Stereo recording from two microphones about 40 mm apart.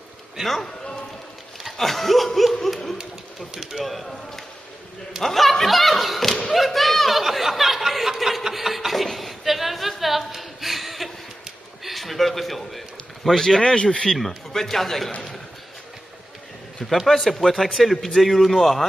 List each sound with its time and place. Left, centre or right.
0.4 s a man's voice: centre
1.8 s a man's voice: centre
5.2 s thump: centre
11.4 s a sound: centre
13.6 s a man's voice: centre
14.0 s a man's voice: centre
16.8 s a man's voice: centre